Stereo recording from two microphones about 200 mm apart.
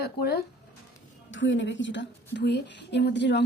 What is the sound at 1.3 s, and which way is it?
A woman's voice, 65° left (ahead or behind).